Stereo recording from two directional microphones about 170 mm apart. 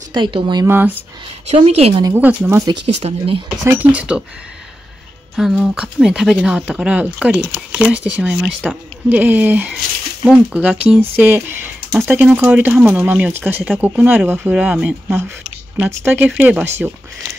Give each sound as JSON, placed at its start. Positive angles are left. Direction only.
{"t": 0.1, "sound": "speech", "side_deg": -30}
{"t": 0.7, "sound": "speech", "side_deg": -10}
{"t": 1.5, "sound": "speech", "side_deg": -35}
{"t": 2.0, "sound": "speech", "side_deg": -10}
{"t": 3.0, "sound": "speech", "side_deg": -35}
{"t": 3.4, "sound": "speech", "side_deg": -10}
{"t": 5.3, "sound": "speech", "side_deg": -5}